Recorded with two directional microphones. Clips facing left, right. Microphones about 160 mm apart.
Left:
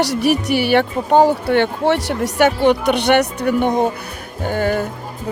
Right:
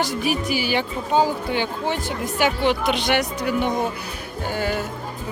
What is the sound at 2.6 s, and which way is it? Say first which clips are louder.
Speech: left 6 dB; 65° left (ahead or behind).